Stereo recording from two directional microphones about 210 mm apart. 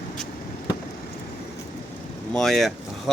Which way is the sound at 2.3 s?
Centre (ahead or behind).